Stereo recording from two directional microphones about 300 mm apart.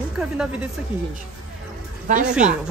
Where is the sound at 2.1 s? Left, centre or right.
Right.